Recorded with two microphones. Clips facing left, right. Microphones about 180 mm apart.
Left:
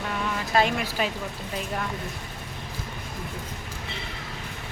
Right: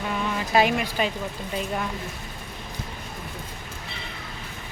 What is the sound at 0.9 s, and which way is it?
Speech, 5° left (ahead or behind).